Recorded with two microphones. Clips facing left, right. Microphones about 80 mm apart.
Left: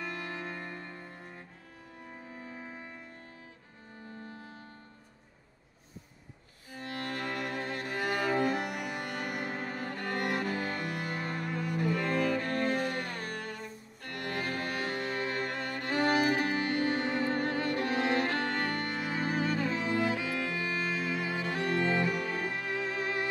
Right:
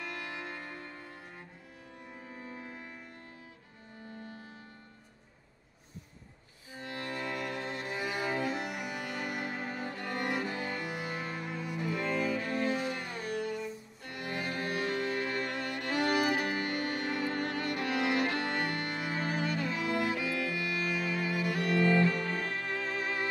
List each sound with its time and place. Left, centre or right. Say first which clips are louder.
0.6 s music: left 2 dB; left
6.7 s cello: left 2 dB; left
9.0 s music: left 1 dB; centre
9.8 s cello: left 3 dB; left
10.4 s music: left 2 dB; left
11.2 s cello: left 3 dB; left
12.5 s music: left 1 dB; left; by 23.2 s centre